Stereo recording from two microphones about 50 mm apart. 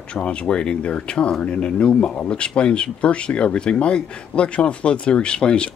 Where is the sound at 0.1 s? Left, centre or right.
Left.